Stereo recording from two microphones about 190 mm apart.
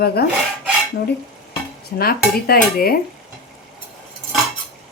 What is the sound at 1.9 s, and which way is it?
Dishes, 50° left (ahead or behind).